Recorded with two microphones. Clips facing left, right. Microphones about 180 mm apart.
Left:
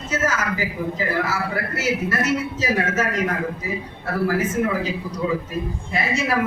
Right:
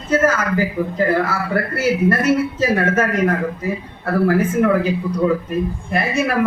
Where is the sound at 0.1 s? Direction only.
55° right (ahead or behind).